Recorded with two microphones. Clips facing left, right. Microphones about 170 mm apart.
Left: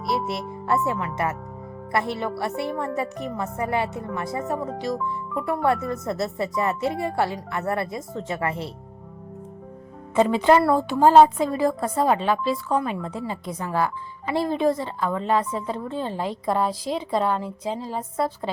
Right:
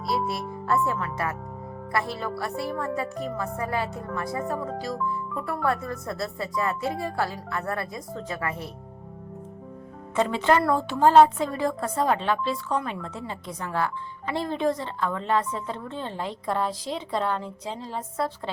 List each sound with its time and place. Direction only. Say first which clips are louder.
0.1 s music: left 1 dB; 25° left (ahead or behind)
0.9 s a woman's voice: left 3 dB; 20° left (ahead or behind)
10.2 s a woman's voice: left 4 dB; 15° left (ahead or behind)